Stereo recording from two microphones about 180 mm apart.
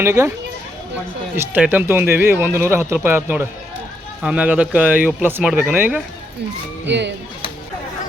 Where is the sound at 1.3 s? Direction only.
10° right (ahead or behind).